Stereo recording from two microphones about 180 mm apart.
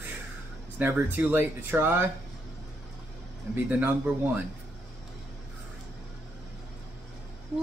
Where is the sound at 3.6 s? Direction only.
10° right (ahead or behind).